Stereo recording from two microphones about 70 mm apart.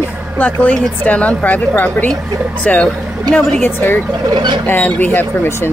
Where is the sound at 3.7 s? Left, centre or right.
Left.